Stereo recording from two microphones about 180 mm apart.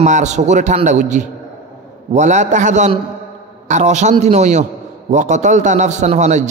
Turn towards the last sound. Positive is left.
turn(degrees=-40)  # may be behind; listen again after turning